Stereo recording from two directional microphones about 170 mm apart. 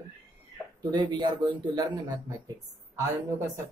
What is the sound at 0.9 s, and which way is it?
Speech, 25° right (ahead or behind).